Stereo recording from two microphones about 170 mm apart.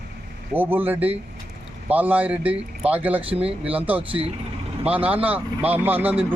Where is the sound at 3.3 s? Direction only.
35° right (ahead or behind).